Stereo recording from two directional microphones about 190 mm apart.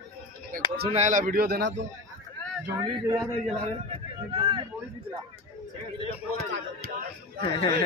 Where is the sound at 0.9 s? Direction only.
40° right (ahead or behind); by 1.9 s 65° right (ahead or behind).